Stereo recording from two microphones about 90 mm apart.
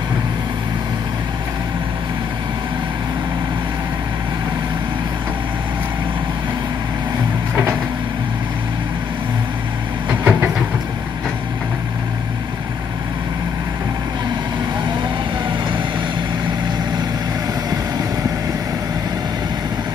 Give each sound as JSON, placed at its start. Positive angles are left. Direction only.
{"t": 10.0, "sound": "vehicle", "side_deg": -20}